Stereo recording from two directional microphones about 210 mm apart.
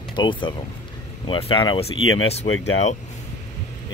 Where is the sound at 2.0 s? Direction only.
75° left (ahead or behind).